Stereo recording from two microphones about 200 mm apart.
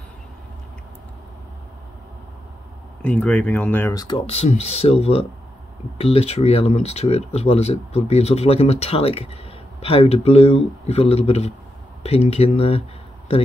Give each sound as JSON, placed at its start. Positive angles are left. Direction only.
{"t": 3.0, "sound": "speech", "side_deg": 5}
{"t": 4.3, "sound": "speech", "side_deg": 30}